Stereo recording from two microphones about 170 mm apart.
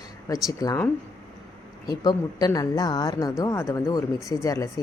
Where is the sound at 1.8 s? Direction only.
25° left (ahead or behind).